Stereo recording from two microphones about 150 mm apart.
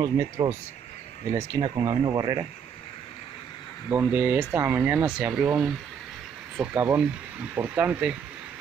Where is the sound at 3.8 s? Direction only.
10° right (ahead or behind).